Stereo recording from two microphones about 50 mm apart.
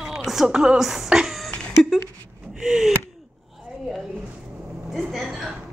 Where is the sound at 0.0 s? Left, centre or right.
Centre.